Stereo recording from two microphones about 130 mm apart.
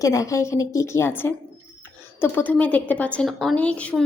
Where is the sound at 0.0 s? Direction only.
25° left (ahead or behind).